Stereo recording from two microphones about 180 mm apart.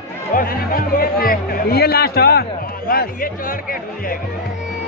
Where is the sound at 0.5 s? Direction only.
55° left (ahead or behind).